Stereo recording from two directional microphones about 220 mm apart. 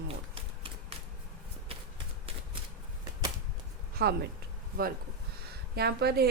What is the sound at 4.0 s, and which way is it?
A woman's voice, 45° right (ahead or behind).